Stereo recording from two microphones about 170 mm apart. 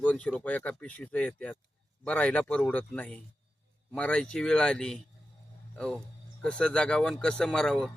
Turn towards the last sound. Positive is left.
turn(degrees=5)  # may be behind; listen again after turning